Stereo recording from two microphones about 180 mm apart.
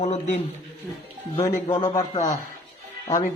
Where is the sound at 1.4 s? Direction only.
25° left (ahead or behind).